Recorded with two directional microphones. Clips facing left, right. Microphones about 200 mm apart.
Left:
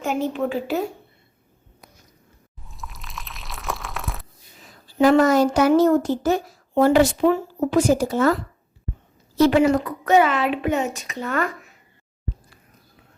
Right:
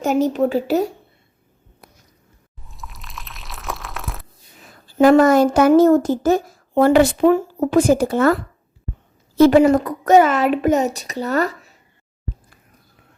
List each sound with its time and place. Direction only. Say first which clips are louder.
0.0 s speech: right 6 dB; 40° right (ahead or behind)
2.6 s a sound: even; centre (ahead or behind)
4.9 s speech: right 4 dB; 50° right (ahead or behind)
9.4 s speech: right 5 dB; 45° right (ahead or behind)